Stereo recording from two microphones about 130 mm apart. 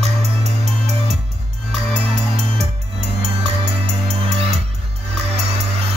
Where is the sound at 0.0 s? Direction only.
55° right (ahead or behind).